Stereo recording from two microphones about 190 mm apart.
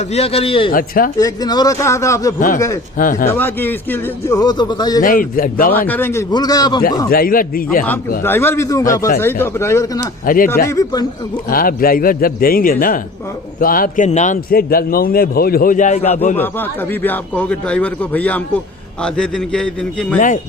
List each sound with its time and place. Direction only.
0.1 s a man's voice: 30° left (ahead or behind)
0.7 s a man's voice: 50° left (ahead or behind)
1.2 s speech: 20° left (ahead or behind)
3.0 s a man's voice: 45° left (ahead or behind)
3.2 s speech: 10° left (ahead or behind)
5.0 s a man's voice: 45° left (ahead or behind)
5.9 s speech: 10° left (ahead or behind)
7.1 s a man's voice: 50° left (ahead or behind)
8.2 s speech: 10° left (ahead or behind)
10.2 s a man's voice: 45° left (ahead or behind)
10.7 s speech: 20° left (ahead or behind)
11.4 s a man's voice: 50° left (ahead or behind)
16.4 s a man's voice: 10° left (ahead or behind)
20.1 s a man's voice: 45° left (ahead or behind)